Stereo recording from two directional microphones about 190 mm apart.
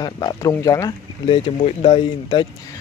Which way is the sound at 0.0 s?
20° left (ahead or behind).